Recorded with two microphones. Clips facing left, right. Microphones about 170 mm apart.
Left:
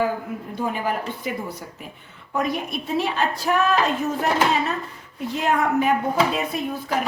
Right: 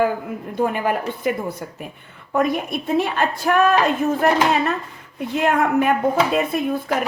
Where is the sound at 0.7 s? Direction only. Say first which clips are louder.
Right 4 dB; 55° right (ahead or behind).